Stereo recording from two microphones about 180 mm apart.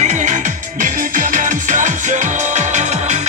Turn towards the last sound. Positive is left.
turn(degrees=-40)  # may be behind; listen again after turning